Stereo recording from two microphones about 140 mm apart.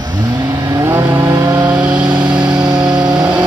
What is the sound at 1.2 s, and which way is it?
Vehicle, 30° right (ahead or behind).